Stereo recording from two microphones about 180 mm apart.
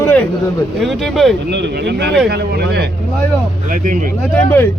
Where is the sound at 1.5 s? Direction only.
70° right (ahead or behind).